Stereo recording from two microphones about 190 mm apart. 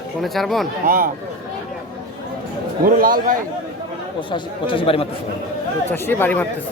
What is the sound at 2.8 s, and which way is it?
Speech, 50° right (ahead or behind).